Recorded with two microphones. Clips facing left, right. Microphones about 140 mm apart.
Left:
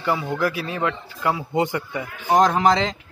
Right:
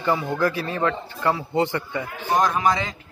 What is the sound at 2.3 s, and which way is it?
Speech, 75° left (ahead or behind).